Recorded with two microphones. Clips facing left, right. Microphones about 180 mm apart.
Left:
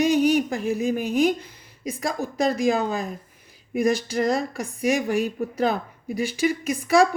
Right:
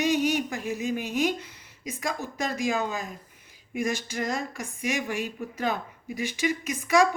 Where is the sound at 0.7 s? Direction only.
55° left (ahead or behind).